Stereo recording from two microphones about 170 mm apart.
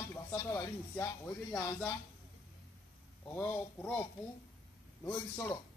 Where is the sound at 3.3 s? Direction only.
10° left (ahead or behind).